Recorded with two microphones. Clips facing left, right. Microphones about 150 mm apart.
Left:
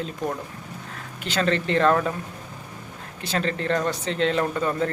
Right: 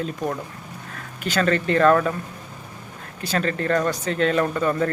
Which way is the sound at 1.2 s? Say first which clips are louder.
Right 2 dB; 25° left (ahead or behind).